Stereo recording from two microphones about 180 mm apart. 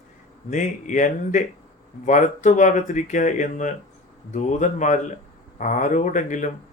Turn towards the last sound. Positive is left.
turn(degrees=45)  # may be behind; listen again after turning